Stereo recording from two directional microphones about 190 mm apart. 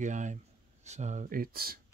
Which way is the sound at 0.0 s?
40° right (ahead or behind).